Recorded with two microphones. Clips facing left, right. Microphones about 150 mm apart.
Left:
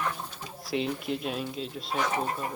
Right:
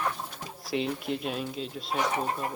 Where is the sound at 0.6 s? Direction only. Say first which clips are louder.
Even; centre (ahead or behind).